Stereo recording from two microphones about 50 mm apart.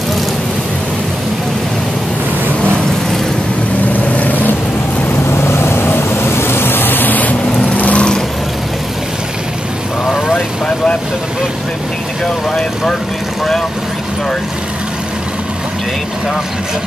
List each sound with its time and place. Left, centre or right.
3.9 s vehicle: left
5.2 s vehicle: left